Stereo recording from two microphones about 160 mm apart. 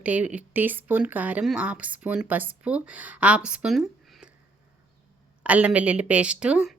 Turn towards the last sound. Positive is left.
turn(degrees=-5)  # may be behind; listen again after turning